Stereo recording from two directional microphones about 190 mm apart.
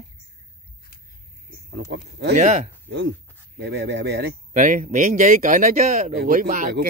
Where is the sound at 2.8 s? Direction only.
65° right (ahead or behind).